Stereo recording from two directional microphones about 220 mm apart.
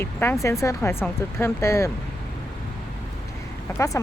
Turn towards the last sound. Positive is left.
turn(degrees=15)  # may be behind; listen again after turning